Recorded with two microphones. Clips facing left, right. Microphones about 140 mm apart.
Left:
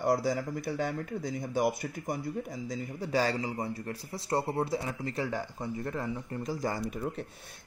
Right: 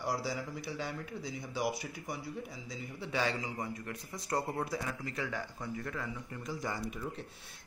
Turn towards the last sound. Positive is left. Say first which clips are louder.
# left 6 dB
turn(degrees=35)  # may be behind; listen again after turning